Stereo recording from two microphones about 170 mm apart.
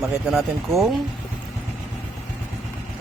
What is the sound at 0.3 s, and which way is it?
Speech, centre (ahead or behind).